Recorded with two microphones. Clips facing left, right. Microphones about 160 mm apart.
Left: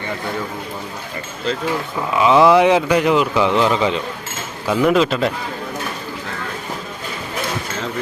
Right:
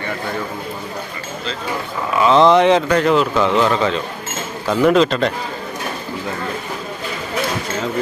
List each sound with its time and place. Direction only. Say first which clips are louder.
2.1 s speech: even; 15° left (ahead or behind)
4.6 s speech: right 2 dB; 5° left (ahead or behind)